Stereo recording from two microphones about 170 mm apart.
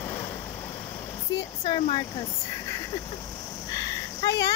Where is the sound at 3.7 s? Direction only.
20° left (ahead or behind).